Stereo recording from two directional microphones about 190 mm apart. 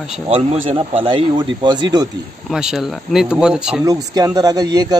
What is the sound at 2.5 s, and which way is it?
Speech, 5° right (ahead or behind).